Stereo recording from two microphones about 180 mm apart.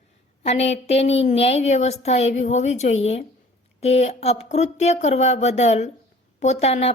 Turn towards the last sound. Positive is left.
turn(degrees=35)  # may be behind; listen again after turning